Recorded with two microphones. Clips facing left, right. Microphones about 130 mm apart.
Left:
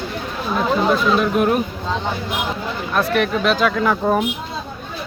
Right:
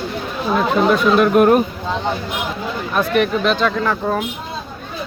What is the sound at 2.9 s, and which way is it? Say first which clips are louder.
Speech: right 2 dB; centre (ahead or behind).